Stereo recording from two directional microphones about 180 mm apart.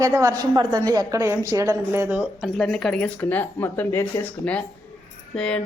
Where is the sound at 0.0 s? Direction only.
20° right (ahead or behind).